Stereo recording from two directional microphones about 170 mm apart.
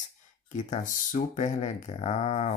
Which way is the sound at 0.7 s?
45° left (ahead or behind).